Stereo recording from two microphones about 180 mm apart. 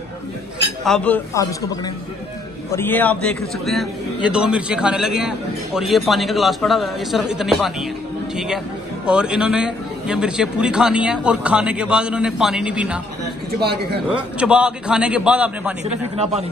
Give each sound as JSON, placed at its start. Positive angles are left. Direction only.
{"t": 0.8, "sound": "speech", "side_deg": 5}
{"t": 2.7, "sound": "a man's voice", "side_deg": 10}
{"t": 9.0, "sound": "a man's voice", "side_deg": -5}
{"t": 13.6, "sound": "speech", "side_deg": -65}
{"t": 14.4, "sound": "a man's voice", "side_deg": -5}